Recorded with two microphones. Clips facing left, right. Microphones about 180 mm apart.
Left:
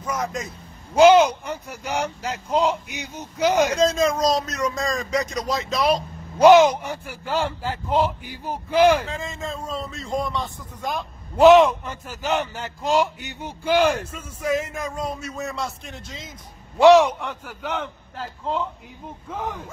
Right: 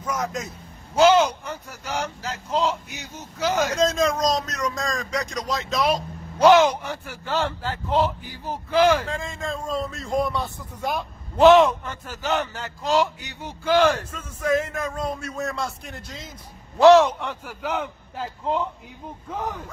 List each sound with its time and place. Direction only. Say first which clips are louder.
0.0 s vehicle: even; centre (ahead or behind)
0.9 s a man's voice: left 3 dB; 10° left (ahead or behind)
3.7 s speech: left 2 dB; centre (ahead or behind)
6.4 s a man's voice: left 3 dB; 10° left (ahead or behind)
9.0 s speech: right 1 dB; 5° left (ahead or behind)
11.3 s speech: left 1 dB; 5° left (ahead or behind)
12.5 s a man's voice: left 1 dB; 15° left (ahead or behind); by 16.3 s centre (ahead or behind)
16.7 s speech: even; 10° left (ahead or behind); by 18.7 s 15° right (ahead or behind)
19.2 s speech: even; centre (ahead or behind)